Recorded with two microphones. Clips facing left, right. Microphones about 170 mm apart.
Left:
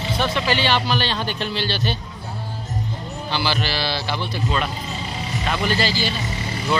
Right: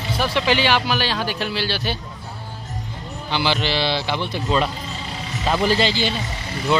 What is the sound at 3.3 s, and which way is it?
Speech, 20° right (ahead or behind).